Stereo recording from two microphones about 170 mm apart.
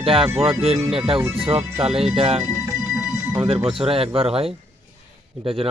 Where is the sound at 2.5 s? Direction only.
15° right (ahead or behind).